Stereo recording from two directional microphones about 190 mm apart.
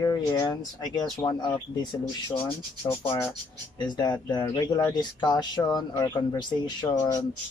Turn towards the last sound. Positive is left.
turn(degrees=20)  # may be behind; listen again after turning